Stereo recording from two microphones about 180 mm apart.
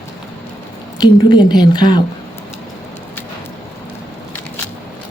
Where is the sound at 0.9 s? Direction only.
25° left (ahead or behind).